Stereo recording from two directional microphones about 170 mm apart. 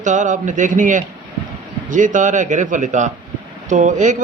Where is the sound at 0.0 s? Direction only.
45° right (ahead or behind).